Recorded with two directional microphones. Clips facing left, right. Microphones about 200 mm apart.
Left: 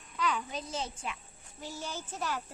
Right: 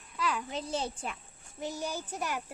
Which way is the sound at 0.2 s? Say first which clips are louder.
Even; 5° right (ahead or behind).